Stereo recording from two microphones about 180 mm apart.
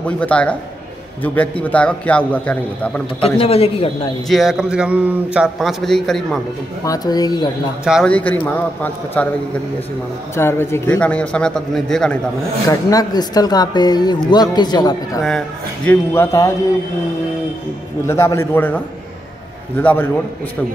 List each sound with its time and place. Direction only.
0.0 s a man's voice: 5° left (ahead or behind)
3.2 s a man's voice: 35° left (ahead or behind)
4.3 s a man's voice: centre (ahead or behind)
6.8 s speech: 20° left (ahead or behind)
7.8 s a man's voice: 5° right (ahead or behind)
8.1 s a man's voice: 10° left (ahead or behind)
10.3 s a man's voice: 15° left (ahead or behind)
12.6 s speech: 20° left (ahead or behind)
15.2 s a man's voice: 5° left (ahead or behind)
18.0 s a man's voice: 15° left (ahead or behind)
19.8 s a man's voice: 10° left (ahead or behind)